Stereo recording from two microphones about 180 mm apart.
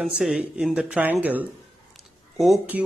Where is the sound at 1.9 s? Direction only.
Centre (ahead or behind).